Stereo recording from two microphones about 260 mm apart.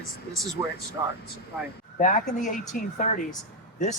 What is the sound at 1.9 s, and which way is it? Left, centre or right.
Speech, left.